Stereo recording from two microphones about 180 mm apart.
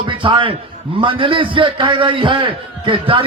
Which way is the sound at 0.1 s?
30° right (ahead or behind).